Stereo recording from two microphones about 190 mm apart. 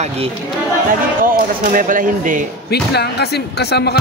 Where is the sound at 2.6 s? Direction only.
60° left (ahead or behind).